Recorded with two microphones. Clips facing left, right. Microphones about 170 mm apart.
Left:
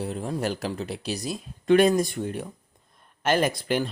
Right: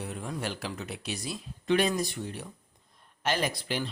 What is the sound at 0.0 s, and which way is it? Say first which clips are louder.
Speech: left 7 dB; 35° left (ahead or behind).